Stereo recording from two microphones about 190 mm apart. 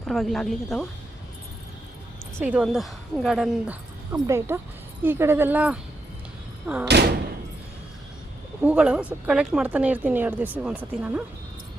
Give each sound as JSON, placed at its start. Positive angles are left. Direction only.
{"t": 0.0, "sound": "a woman's voice", "side_deg": 0}
{"t": 2.4, "sound": "a woman's voice", "side_deg": -5}
{"t": 4.1, "sound": "a woman's voice", "side_deg": -15}
{"t": 6.8, "sound": "speech", "side_deg": -60}
{"t": 8.6, "sound": "a woman's voice", "side_deg": -5}